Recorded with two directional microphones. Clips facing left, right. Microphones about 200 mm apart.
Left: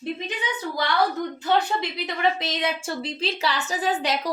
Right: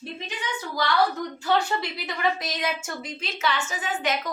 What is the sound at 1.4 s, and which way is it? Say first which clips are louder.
A woman's voice: left 1 dB; 20° left (ahead or behind).